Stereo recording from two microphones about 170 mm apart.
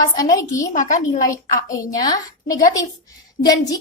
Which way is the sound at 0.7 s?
50° left (ahead or behind).